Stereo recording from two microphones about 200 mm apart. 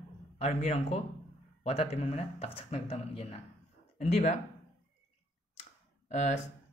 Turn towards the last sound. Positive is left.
turn(degrees=35)  # may be behind; listen again after turning